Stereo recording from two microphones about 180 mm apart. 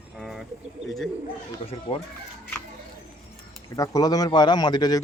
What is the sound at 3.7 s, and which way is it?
A man's voice, 20° left (ahead or behind).